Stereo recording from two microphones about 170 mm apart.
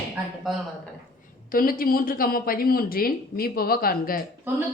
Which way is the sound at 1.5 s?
55° left (ahead or behind).